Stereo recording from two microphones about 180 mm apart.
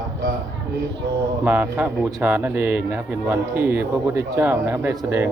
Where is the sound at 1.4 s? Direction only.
10° right (ahead or behind).